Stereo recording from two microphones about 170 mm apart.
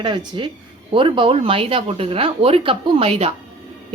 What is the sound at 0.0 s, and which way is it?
A woman's voice, 25° right (ahead or behind).